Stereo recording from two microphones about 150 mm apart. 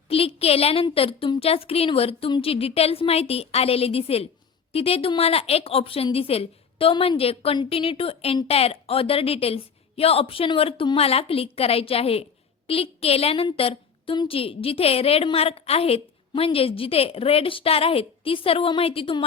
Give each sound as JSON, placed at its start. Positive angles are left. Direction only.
{"t": 0.1, "sound": "a woman's voice", "side_deg": 40}